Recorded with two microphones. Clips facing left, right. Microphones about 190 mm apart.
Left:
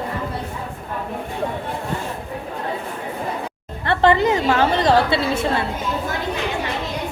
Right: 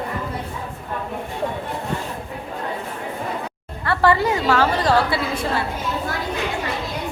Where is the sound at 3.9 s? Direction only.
20° left (ahead or behind).